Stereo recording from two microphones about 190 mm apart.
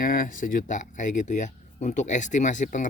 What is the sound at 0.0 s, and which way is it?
Speech, 45° left (ahead or behind).